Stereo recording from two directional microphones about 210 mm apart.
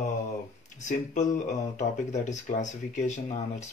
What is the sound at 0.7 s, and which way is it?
Speech, 35° left (ahead or behind).